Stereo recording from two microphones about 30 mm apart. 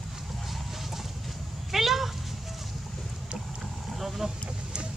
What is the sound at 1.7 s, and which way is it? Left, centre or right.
Cat, centre.